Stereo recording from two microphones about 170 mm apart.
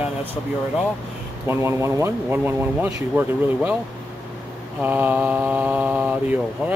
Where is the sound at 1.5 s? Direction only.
15° right (ahead or behind).